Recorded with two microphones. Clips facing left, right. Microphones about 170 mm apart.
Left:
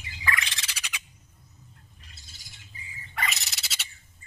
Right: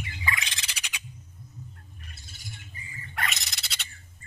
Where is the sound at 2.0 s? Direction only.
55° right (ahead or behind).